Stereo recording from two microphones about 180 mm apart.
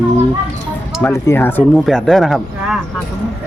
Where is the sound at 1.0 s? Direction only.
15° left (ahead or behind).